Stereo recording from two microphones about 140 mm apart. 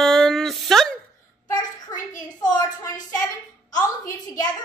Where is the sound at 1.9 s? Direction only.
25° left (ahead or behind).